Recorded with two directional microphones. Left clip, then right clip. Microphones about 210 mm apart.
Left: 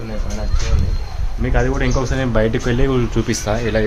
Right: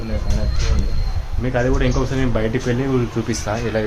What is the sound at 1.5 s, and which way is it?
Speech, 30° left (ahead or behind).